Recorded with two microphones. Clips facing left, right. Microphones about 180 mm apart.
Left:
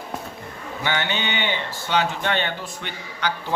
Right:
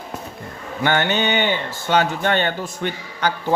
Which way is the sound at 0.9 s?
50° right (ahead or behind).